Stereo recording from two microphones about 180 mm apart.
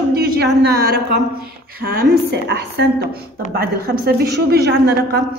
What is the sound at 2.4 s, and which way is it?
A woman's voice, 65° right (ahead or behind).